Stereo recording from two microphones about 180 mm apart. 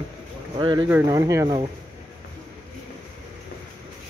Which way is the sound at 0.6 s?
25° right (ahead or behind).